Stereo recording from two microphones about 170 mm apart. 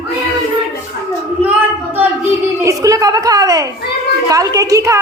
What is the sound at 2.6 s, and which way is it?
A woman's voice, 20° right (ahead or behind).